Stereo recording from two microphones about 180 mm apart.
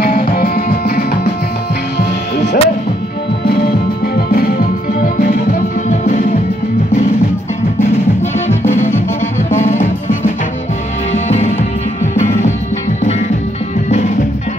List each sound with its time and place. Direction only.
0.0 s music: 60° left (ahead or behind)
4.3 s music: 55° left (ahead or behind)
8.5 s music: 40° left (ahead or behind)
13.8 s music: 40° left (ahead or behind)